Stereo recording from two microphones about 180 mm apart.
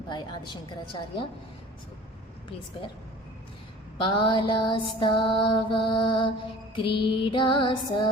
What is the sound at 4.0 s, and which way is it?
Music, 25° left (ahead or behind).